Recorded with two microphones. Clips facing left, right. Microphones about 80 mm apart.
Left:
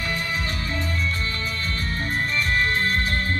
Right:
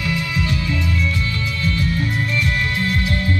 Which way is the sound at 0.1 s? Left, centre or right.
Left.